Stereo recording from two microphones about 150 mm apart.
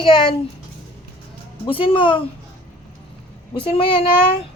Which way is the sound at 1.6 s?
35° left (ahead or behind).